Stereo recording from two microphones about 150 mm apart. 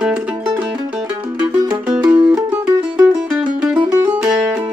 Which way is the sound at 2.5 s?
10° right (ahead or behind).